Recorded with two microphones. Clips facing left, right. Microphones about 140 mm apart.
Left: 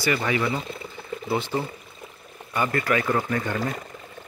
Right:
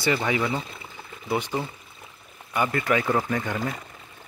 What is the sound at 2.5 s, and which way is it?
Speech, 15° right (ahead or behind).